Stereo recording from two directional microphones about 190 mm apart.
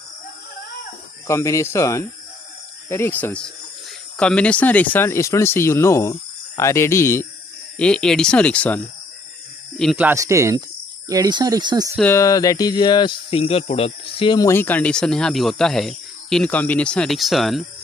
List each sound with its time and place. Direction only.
1.2 s speech: 15° left (ahead or behind)
10.0 s speech: 15° right (ahead or behind)
11.9 s speech: 10° left (ahead or behind)